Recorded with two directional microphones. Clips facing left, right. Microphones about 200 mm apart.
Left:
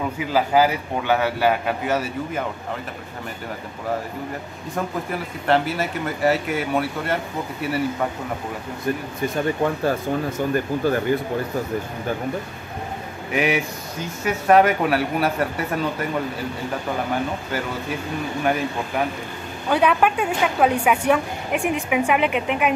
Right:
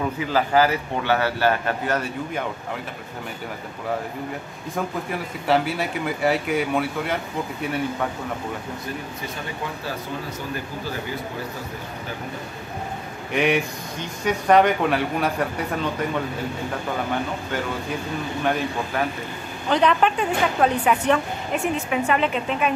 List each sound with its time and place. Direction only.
0.3 s a woman's voice: 10° left (ahead or behind)
4.7 s speech: centre (ahead or behind)
10.5 s speech: 55° left (ahead or behind)
13.3 s speech: 5° left (ahead or behind)
18.4 s a woman's voice: 5° left (ahead or behind)